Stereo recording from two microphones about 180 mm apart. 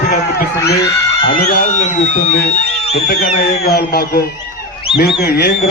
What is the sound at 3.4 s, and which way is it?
A man's voice, 60° left (ahead or behind).